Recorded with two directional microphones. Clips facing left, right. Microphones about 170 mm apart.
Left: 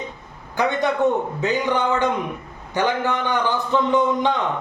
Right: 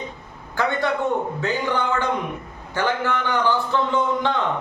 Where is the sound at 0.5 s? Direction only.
15° left (ahead or behind).